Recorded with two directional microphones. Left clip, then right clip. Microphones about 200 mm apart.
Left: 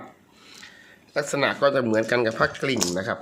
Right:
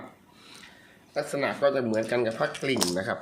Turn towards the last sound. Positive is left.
turn(degrees=20)  # may be behind; listen again after turning